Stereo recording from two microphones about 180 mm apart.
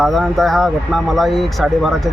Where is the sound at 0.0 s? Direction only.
Centre (ahead or behind).